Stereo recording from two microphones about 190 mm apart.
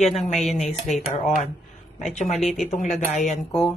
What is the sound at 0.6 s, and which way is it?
Speech, 35° left (ahead or behind).